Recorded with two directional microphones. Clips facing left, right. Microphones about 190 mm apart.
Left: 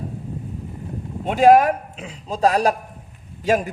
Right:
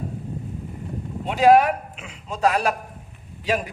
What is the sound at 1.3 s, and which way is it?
A man's voice, 45° left (ahead or behind).